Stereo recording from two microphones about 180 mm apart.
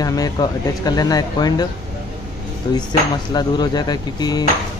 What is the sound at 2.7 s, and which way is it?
Speech, 25° left (ahead or behind).